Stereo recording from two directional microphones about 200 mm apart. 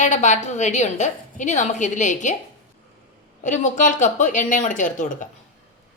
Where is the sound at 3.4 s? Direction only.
40° left (ahead or behind).